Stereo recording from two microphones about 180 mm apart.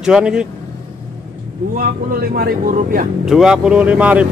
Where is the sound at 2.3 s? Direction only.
55° right (ahead or behind).